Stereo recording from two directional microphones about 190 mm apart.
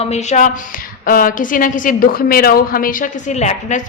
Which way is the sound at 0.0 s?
35° left (ahead or behind).